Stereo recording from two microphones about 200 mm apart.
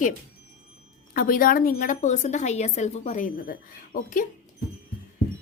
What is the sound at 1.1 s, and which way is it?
Speech, 45° left (ahead or behind).